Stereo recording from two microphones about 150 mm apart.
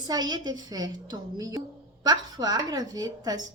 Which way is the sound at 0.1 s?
25° right (ahead or behind).